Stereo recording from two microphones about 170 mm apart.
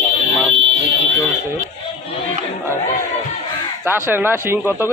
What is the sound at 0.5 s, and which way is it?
Fire alarm, 90° right.